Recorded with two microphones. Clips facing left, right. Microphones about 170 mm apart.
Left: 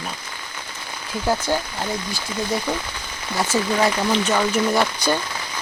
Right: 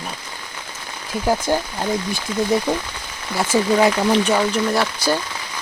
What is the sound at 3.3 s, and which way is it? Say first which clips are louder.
Speech: right 4 dB; 10° right (ahead or behind).